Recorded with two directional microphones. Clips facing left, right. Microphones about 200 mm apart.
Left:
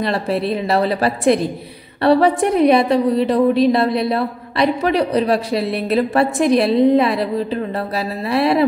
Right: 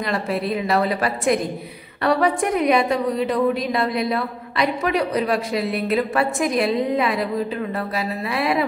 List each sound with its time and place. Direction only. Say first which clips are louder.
0.0 s a woman's voice: left 4 dB; 30° left (ahead or behind)